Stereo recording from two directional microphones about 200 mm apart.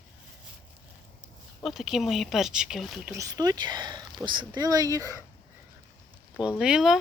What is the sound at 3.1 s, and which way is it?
Speech, 15° right (ahead or behind).